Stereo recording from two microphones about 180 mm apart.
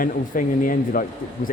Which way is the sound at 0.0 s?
50° left (ahead or behind).